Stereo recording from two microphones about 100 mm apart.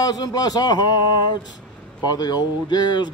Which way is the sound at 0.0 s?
40° left (ahead or behind).